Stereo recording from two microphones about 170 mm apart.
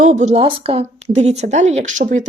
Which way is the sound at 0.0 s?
45° right (ahead or behind).